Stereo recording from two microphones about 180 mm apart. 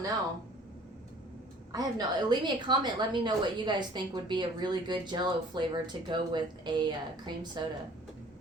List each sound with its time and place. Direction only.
1.7 s a woman's voice: 20° right (ahead or behind)